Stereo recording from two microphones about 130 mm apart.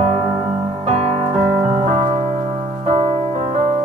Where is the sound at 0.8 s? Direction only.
55° right (ahead or behind).